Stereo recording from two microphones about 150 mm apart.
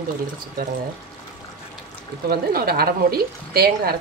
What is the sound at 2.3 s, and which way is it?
A woman's voice, 75° right (ahead or behind).